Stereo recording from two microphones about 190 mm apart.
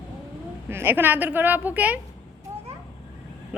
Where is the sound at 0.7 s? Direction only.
10° right (ahead or behind).